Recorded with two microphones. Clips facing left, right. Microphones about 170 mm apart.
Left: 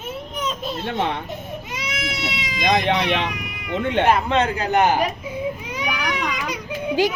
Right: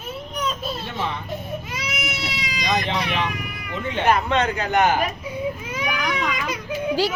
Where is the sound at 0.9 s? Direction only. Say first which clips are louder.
Left 7 dB; 65° left (ahead or behind).